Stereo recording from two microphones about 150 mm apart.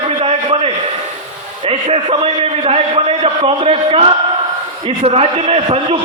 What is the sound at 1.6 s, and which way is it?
A man's voice, 35° right (ahead or behind).